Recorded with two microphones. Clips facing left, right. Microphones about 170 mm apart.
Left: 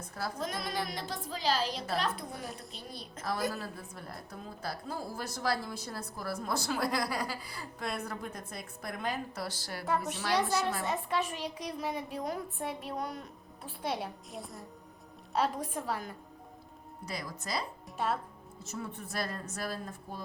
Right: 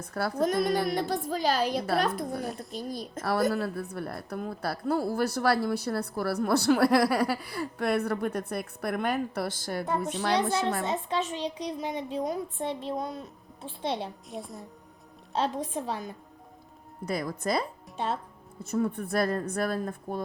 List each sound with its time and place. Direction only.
0.1 s a woman's voice: 65° right (ahead or behind)
0.4 s a woman's voice: 50° right (ahead or behind)
10.3 s a woman's voice: 25° right (ahead or behind)
14.3 s speech: centre (ahead or behind)
15.3 s a woman's voice: 20° right (ahead or behind)
17.1 s a woman's voice: 55° right (ahead or behind)
17.9 s speech: 25° right (ahead or behind)
18.6 s a woman's voice: 55° right (ahead or behind)